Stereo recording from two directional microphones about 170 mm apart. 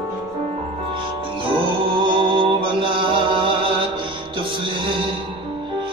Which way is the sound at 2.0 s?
30° right (ahead or behind).